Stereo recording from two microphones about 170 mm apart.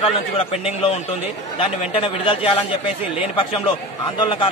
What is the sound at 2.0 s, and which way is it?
Speech, 30° left (ahead or behind).